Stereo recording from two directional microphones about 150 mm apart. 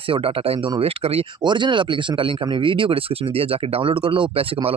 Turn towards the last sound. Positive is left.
turn(degrees=-40)  # may be behind; listen again after turning